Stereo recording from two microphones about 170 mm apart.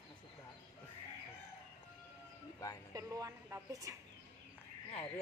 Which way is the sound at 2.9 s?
20° right (ahead or behind).